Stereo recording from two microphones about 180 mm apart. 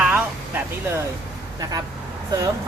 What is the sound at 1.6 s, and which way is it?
Speech, 20° right (ahead or behind).